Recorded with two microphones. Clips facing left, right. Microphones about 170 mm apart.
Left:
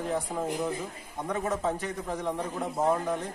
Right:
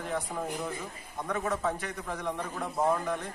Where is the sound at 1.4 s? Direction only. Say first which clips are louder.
Left 2 dB; 30° left (ahead or behind).